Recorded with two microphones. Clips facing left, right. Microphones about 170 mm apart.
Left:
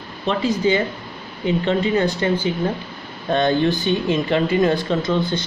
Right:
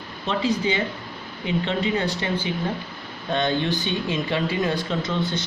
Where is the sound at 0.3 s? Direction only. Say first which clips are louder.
Left 4 dB; 45° left (ahead or behind).